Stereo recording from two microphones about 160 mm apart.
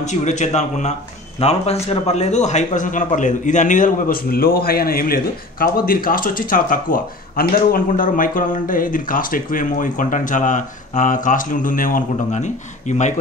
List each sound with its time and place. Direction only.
0.0 s a man's voice: 50° left (ahead or behind)